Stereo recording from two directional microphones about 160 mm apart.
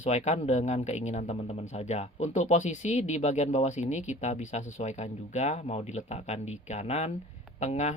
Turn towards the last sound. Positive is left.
turn(degrees=45)  # may be behind; listen again after turning